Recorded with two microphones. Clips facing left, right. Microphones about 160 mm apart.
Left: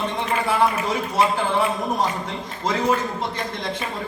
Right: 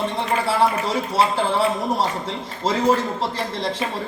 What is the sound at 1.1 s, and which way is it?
A man's voice, 30° right (ahead or behind).